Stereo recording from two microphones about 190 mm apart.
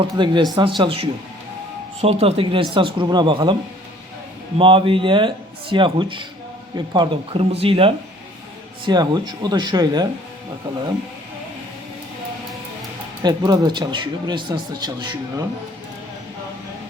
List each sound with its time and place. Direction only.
0.0 s speech: 25° right (ahead or behind)
13.2 s speech: 20° right (ahead or behind)